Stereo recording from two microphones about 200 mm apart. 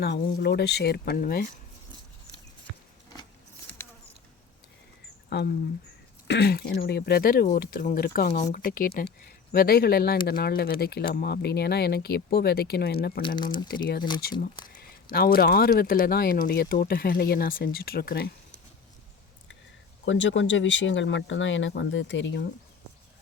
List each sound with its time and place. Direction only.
0.0 s speech: 50° left (ahead or behind)
5.3 s speech: 55° left (ahead or behind)
13.2 s speech: 25° left (ahead or behind)
15.1 s speech: 50° left (ahead or behind)
20.1 s speech: 65° left (ahead or behind)